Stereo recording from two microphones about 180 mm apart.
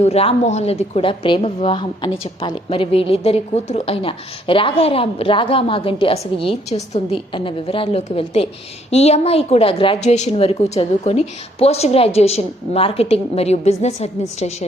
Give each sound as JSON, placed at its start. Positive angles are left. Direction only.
{"t": 0.0, "sound": "a woman's voice", "side_deg": 35}